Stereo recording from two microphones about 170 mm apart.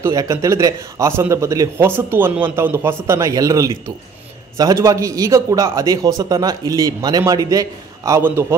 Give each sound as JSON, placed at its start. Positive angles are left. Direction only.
{"t": 0.0, "sound": "a man's voice", "side_deg": -20}